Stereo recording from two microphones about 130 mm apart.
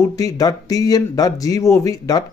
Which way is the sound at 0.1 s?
25° left (ahead or behind).